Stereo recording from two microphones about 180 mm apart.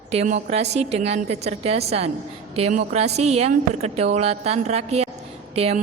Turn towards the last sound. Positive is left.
turn(degrees=-35)  # may be behind; listen again after turning